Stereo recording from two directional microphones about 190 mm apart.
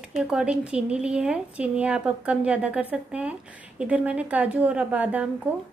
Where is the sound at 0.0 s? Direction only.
5° right (ahead or behind).